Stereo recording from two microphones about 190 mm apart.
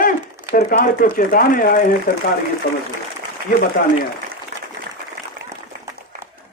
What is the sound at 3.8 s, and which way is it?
Speech, 50° left (ahead or behind).